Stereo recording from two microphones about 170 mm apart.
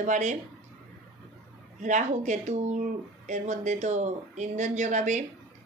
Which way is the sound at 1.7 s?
45° right (ahead or behind).